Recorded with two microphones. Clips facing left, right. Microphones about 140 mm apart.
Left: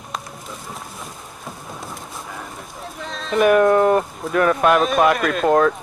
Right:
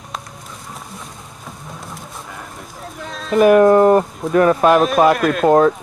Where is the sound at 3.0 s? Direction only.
5° right (ahead or behind).